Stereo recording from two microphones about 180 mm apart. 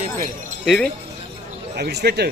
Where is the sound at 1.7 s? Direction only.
65° right (ahead or behind).